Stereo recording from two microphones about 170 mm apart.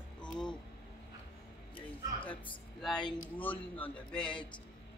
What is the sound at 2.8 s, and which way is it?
Speech, 5° left (ahead or behind).